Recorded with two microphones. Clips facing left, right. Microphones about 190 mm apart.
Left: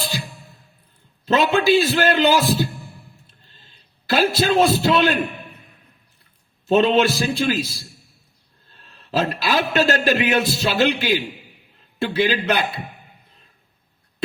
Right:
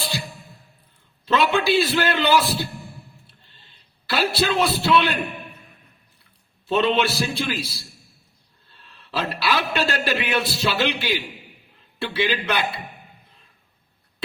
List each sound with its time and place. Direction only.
1.2 s a man's voice: 45° left (ahead or behind)
4.1 s a man's voice: 45° left (ahead or behind)
6.7 s a man's voice: 45° left (ahead or behind)